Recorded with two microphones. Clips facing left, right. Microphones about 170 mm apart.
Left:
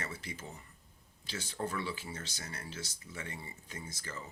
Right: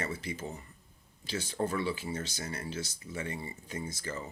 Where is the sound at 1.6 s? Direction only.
25° right (ahead or behind).